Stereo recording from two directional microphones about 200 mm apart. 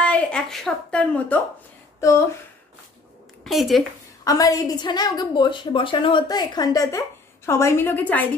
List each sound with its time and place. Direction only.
0.0 s a woman's voice: 5° left (ahead or behind)
3.4 s speech: centre (ahead or behind)
4.2 s a woman's voice: 15° left (ahead or behind)